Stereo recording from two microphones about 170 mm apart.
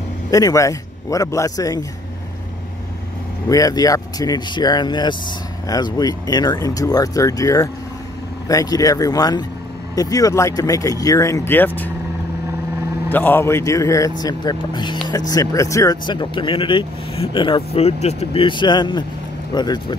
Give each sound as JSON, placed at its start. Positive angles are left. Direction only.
{"t": 0.3, "sound": "speech", "side_deg": 20}
{"t": 3.4, "sound": "speech", "side_deg": 20}
{"t": 13.1, "sound": "speech", "side_deg": 10}